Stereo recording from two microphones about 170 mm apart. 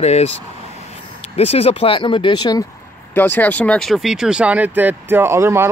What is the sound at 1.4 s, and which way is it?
Speech, 35° left (ahead or behind).